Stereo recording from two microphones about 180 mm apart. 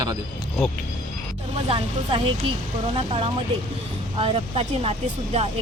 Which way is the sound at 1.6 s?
30° right (ahead or behind).